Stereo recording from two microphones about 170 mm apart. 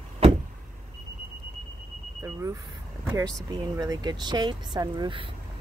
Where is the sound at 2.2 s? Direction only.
20° right (ahead or behind).